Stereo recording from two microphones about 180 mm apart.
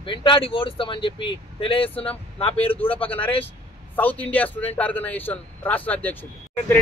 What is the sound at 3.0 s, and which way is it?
Speech, 10° left (ahead or behind).